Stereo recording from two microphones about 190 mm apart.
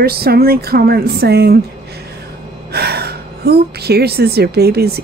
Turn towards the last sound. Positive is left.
turn(degrees=-55)  # may be behind; listen again after turning